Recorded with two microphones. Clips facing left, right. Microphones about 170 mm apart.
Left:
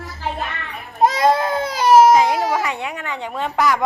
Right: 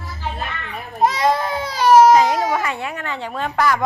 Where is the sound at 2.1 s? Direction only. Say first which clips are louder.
Even; 10° left (ahead or behind).